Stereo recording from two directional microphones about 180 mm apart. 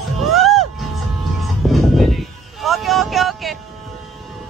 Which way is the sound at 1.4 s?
Centre (ahead or behind).